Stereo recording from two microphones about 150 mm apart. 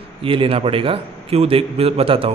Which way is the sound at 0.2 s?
35° right (ahead or behind).